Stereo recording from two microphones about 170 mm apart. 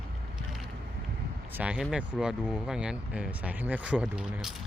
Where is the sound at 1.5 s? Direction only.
5° right (ahead or behind).